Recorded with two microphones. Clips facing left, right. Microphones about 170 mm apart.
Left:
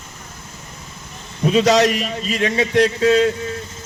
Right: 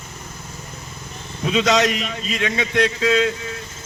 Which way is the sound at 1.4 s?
40° left (ahead or behind).